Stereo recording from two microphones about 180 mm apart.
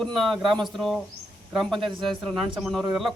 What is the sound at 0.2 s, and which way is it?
Speech, centre (ahead or behind).